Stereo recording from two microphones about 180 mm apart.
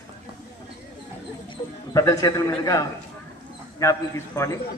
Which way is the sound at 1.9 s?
20° left (ahead or behind).